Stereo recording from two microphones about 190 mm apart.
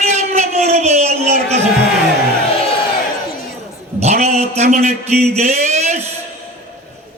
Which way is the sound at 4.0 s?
35° right (ahead or behind).